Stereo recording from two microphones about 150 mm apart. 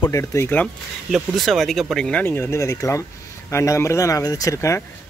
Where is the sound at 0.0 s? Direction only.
20° left (ahead or behind).